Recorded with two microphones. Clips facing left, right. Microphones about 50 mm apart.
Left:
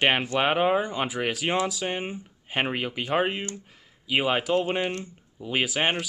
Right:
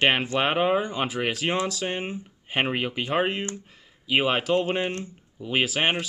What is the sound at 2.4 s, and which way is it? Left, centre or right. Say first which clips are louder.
Speech: right 2 dB; centre.